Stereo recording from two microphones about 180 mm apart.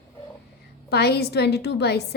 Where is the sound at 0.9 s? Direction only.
65° left (ahead or behind).